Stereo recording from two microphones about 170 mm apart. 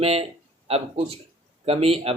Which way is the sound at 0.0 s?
35° right (ahead or behind).